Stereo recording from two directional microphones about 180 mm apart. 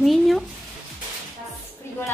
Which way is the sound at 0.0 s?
Centre (ahead or behind).